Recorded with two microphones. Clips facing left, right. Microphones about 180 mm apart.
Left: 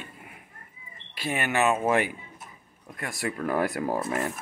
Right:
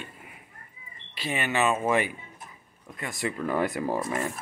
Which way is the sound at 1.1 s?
50° left (ahead or behind).